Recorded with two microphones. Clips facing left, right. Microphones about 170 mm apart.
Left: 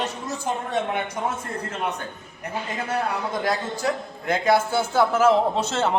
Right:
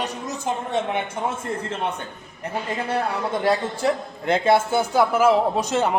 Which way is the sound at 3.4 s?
30° right (ahead or behind).